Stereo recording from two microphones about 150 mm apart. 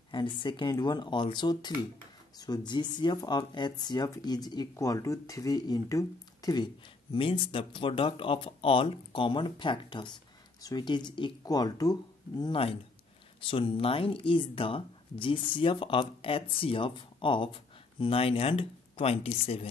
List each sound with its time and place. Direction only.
0.1 s speech: 35° left (ahead or behind)